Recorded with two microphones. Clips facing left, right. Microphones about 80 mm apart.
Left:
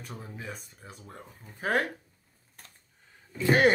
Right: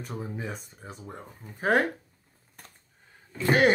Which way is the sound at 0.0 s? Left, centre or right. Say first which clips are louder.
Right 6 dB; centre.